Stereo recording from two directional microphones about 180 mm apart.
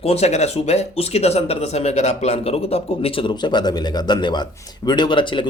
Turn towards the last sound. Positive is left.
turn(degrees=25)  # may be behind; listen again after turning